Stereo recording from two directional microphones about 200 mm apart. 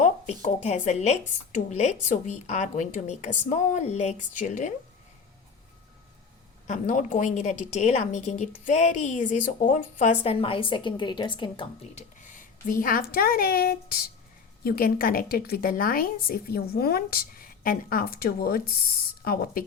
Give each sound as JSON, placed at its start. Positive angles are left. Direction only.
{"t": 0.0, "sound": "a woman's voice", "side_deg": 35}
{"t": 6.7, "sound": "a woman's voice", "side_deg": 40}